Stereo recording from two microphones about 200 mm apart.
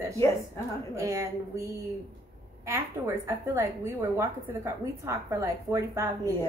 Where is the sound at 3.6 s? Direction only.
15° right (ahead or behind).